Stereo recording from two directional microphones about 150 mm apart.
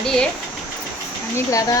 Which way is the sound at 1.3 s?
20° left (ahead or behind).